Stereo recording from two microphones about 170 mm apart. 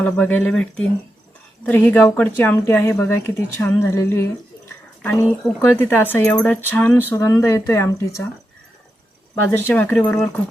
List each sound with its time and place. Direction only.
0.0 s a woman's voice: 10° left (ahead or behind)
9.3 s a woman's voice: 10° left (ahead or behind)